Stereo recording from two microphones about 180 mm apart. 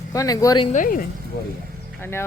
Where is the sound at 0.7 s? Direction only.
50° left (ahead or behind).